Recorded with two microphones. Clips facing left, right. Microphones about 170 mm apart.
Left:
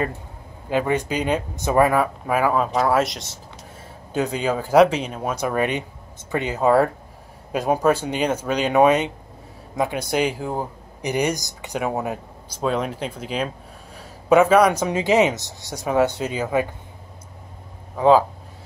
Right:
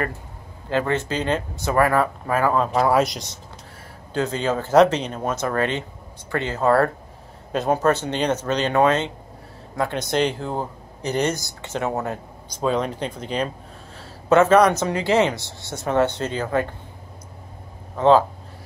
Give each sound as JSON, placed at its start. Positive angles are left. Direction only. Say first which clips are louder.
{"t": 0.7, "sound": "a man's voice", "louder": "left 1 dB", "side_deg": 15}
{"t": 4.1, "sound": "a man's voice", "louder": "even", "side_deg": 15}
{"t": 17.9, "sound": "speech", "louder": "even", "side_deg": 5}